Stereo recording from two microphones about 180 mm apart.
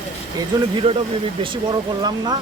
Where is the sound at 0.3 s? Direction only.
20° right (ahead or behind).